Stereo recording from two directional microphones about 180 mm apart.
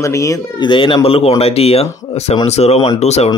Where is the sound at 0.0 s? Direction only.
15° left (ahead or behind).